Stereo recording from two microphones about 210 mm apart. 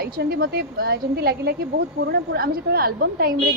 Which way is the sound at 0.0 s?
45° right (ahead or behind).